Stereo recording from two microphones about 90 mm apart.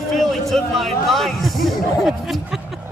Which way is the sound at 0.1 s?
5° left (ahead or behind).